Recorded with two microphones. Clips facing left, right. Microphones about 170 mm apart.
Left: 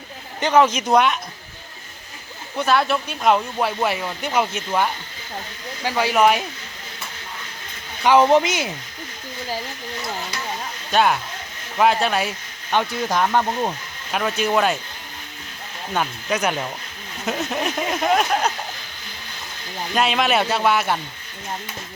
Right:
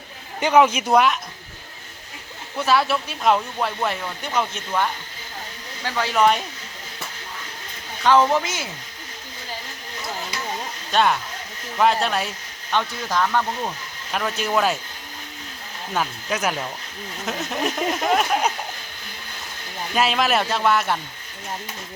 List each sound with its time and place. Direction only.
0.3 s a man's voice: 10° right (ahead or behind)
2.6 s speech: 5° right (ahead or behind)
8.0 s speech: 15° left (ahead or behind)
10.9 s speech: 5° left (ahead or behind)
12.7 s speech: 15° left (ahead or behind)
13.1 s speech: 25° left (ahead or behind)
14.1 s speech: 5° left (ahead or behind)
16.0 s speech: centre (ahead or behind)
19.9 s speech: centre (ahead or behind)